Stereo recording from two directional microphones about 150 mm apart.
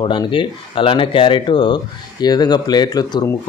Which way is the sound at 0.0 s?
35° left (ahead or behind).